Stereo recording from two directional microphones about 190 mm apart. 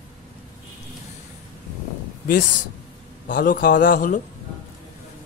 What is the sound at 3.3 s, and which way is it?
Speech, 45° left (ahead or behind).